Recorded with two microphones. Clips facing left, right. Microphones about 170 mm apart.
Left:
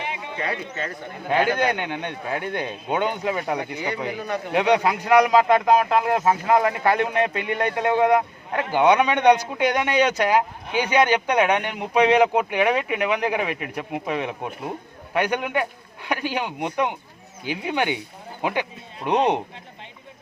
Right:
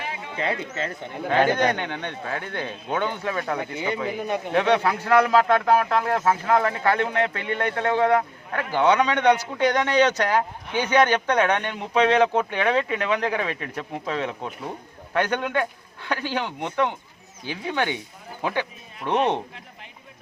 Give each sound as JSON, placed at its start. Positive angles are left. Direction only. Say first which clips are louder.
{"t": 0.3, "sound": "speech", "louder": "right 3 dB", "side_deg": -25}
{"t": 1.3, "sound": "speech", "louder": "even", "side_deg": 10}
{"t": 3.8, "sound": "speech", "louder": "right 1 dB", "side_deg": -20}
{"t": 4.5, "sound": "speech", "louder": "left 2 dB", "side_deg": 15}